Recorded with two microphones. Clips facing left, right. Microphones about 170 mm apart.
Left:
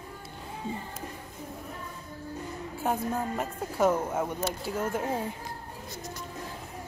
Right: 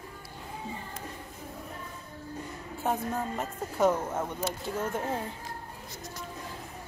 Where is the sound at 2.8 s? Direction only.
Centre (ahead or behind).